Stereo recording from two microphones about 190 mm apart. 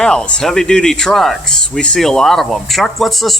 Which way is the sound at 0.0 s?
5° left (ahead or behind).